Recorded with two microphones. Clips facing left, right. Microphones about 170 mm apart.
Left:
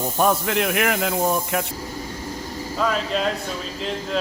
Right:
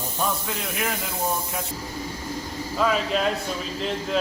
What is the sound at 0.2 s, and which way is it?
Speech, 70° left (ahead or behind).